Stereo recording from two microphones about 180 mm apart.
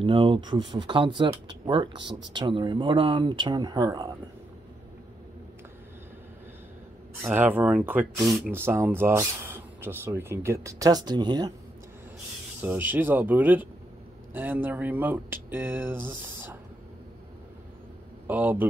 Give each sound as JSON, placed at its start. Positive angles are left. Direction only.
{"t": 0.0, "sound": "speech", "side_deg": -30}
{"t": 7.2, "sound": "speech", "side_deg": -10}
{"t": 12.6, "sound": "speech", "side_deg": -10}
{"t": 18.2, "sound": "a man's voice", "side_deg": -10}